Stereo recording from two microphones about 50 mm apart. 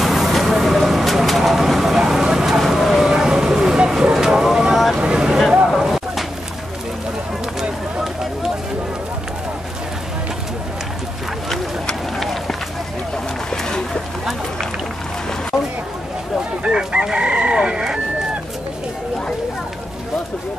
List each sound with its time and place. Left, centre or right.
0.0 s vehicle: centre
2.6 s a sound: centre
4.9 s vehicle: centre
5.8 s a sound: centre
12.2 s run: centre
16.6 s chicken: centre